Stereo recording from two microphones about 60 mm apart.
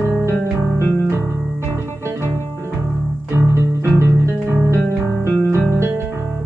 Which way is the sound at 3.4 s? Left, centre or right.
Right.